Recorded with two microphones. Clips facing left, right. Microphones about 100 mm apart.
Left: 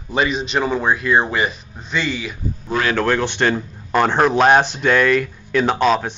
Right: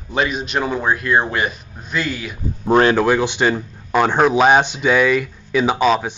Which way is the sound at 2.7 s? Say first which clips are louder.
Right 7 dB; 35° right (ahead or behind).